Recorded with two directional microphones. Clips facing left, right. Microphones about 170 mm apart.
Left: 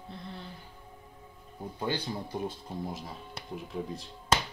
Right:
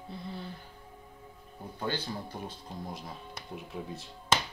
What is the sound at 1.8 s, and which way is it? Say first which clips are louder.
Speech: left 2 dB; 15° left (ahead or behind).